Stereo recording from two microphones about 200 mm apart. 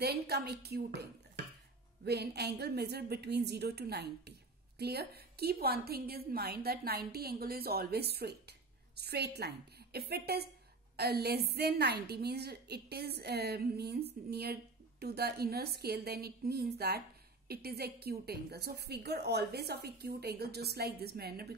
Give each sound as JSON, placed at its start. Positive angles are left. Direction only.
{"t": 0.0, "sound": "a woman's voice", "side_deg": -55}
{"t": 2.0, "sound": "a woman's voice", "side_deg": -55}